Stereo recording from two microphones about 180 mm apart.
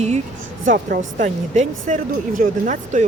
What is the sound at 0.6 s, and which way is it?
Speech, 50° right (ahead or behind).